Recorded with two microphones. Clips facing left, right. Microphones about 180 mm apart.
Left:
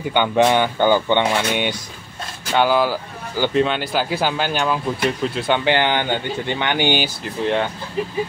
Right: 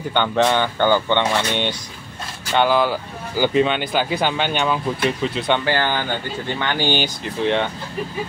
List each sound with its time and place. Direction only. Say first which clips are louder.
0.1 s speech: left 2 dB; 15° left (ahead or behind)
5.7 s speech: left 3 dB; 20° left (ahead or behind)
7.2 s speech: right 1 dB; 5° left (ahead or behind)